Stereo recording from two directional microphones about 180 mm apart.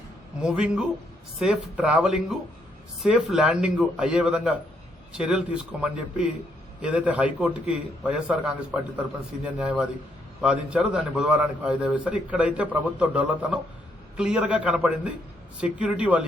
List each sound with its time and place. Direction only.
0.3 s a man's voice: 5° right (ahead or behind)